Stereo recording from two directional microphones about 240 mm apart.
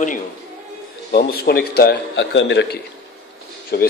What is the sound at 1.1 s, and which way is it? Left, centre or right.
A man's voice, left.